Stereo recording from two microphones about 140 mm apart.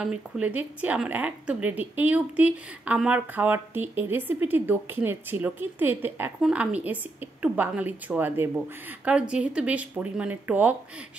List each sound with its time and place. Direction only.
0.0 s a woman's voice: 10° right (ahead or behind)